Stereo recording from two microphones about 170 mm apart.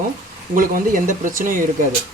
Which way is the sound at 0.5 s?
50° right (ahead or behind).